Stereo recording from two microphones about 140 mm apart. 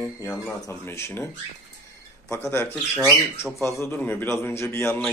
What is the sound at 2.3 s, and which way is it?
Speech, 15° left (ahead or behind).